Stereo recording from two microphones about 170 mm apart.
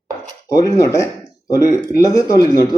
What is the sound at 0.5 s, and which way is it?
Speech, 20° left (ahead or behind).